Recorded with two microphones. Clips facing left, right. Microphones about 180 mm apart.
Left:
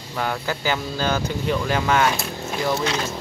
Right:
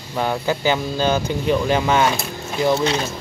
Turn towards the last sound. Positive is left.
turn(degrees=-25)  # may be behind; listen again after turning